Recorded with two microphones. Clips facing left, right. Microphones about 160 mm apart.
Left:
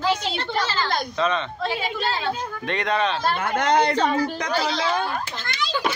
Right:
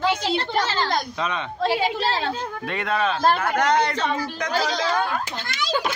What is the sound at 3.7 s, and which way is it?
Speech, 30° left (ahead or behind).